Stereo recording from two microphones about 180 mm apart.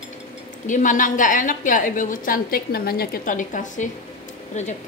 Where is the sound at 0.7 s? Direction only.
45° left (ahead or behind).